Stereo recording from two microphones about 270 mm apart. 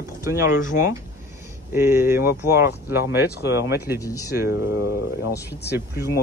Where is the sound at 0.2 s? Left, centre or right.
Centre.